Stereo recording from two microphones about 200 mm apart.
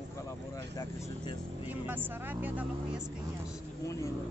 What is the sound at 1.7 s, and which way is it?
Speech, 10° right (ahead or behind).